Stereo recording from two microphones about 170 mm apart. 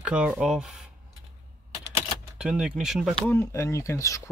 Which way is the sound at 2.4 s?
5° right (ahead or behind).